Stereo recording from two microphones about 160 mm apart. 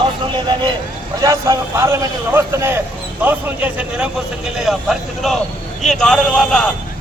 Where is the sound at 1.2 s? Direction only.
20° right (ahead or behind); by 6.7 s 5° left (ahead or behind).